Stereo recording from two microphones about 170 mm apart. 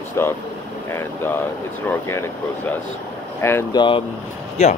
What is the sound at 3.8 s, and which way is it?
Speech, 30° left (ahead or behind).